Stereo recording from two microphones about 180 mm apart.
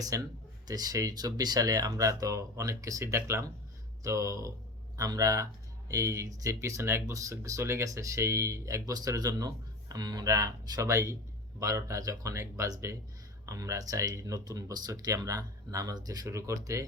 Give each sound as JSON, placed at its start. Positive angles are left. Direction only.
{"t": 0.1, "sound": "speech", "side_deg": -15}